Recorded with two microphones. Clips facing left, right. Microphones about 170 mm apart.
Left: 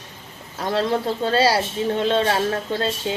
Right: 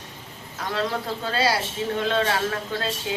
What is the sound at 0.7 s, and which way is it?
Speech, 30° left (ahead or behind).